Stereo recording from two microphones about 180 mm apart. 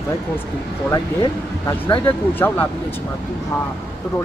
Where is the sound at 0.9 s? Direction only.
20° left (ahead or behind).